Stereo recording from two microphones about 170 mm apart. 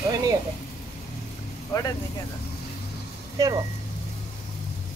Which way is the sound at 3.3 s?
20° right (ahead or behind).